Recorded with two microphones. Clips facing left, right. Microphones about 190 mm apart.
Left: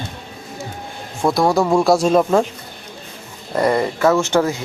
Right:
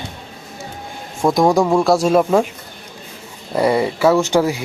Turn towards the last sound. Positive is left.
turn(degrees=-15)  # may be behind; listen again after turning